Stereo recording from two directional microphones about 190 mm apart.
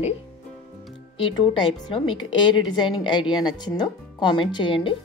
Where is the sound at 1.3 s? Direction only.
25° left (ahead or behind).